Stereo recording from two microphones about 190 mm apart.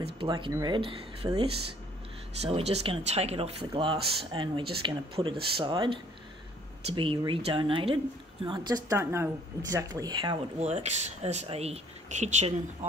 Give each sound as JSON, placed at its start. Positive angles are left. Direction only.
{"t": 0.2, "sound": "speech", "side_deg": -25}
{"t": 10.6, "sound": "speech", "side_deg": -35}